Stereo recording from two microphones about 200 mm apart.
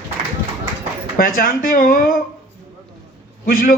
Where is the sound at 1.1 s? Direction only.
45° left (ahead or behind).